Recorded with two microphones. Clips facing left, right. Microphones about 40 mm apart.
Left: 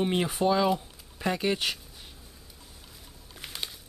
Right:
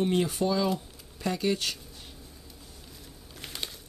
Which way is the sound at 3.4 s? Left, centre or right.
Centre.